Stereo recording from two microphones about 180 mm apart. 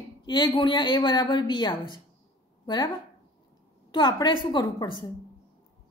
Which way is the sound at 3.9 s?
25° left (ahead or behind).